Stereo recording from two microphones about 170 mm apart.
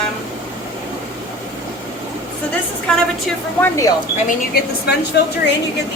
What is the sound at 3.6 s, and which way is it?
Speech, 20° left (ahead or behind).